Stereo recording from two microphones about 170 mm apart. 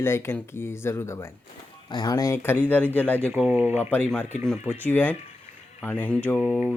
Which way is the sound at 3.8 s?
10° left (ahead or behind).